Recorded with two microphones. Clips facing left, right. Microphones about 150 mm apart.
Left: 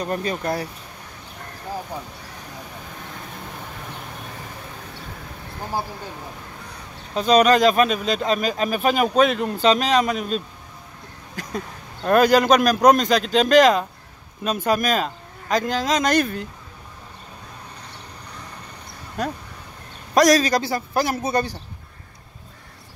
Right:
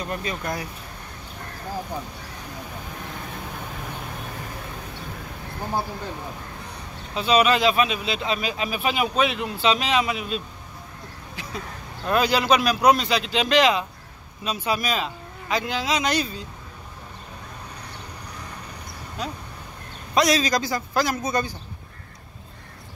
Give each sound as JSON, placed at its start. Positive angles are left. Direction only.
{"t": 0.0, "sound": "a man's voice", "side_deg": 40}
{"t": 7.2, "sound": "a man's voice", "side_deg": 40}
{"t": 19.2, "sound": "a man's voice", "side_deg": 45}